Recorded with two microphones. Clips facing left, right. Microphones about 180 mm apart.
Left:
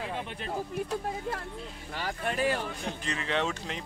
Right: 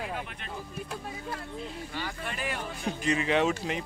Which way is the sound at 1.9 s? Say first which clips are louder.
Left 3 dB; 45° left (ahead or behind).